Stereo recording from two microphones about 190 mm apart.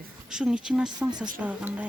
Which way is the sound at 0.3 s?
5° right (ahead or behind).